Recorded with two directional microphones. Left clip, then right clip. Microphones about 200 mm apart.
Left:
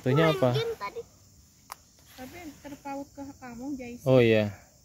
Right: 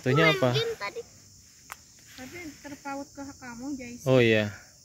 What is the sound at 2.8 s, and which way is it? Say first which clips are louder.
Speech: right 1 dB; 45° left (ahead or behind).